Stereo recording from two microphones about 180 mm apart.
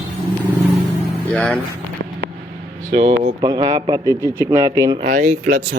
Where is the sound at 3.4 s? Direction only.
25° right (ahead or behind).